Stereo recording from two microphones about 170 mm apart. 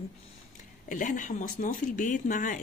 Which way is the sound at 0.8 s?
50° left (ahead or behind).